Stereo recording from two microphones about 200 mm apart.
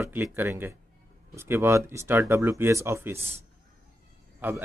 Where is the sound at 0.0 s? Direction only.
10° right (ahead or behind).